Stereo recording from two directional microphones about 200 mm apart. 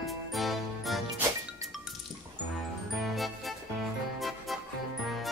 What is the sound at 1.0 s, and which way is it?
Music, 15° right (ahead or behind).